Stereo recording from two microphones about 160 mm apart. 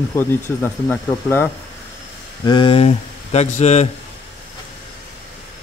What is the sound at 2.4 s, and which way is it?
Speech, 30° left (ahead or behind).